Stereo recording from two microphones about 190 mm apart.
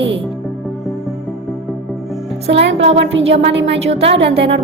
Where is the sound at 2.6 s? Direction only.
75° right (ahead or behind).